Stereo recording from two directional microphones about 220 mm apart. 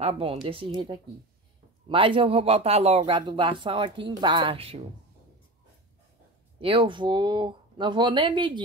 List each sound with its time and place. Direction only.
0.0 s speech: 25° right (ahead or behind)
6.6 s speech: 25° right (ahead or behind)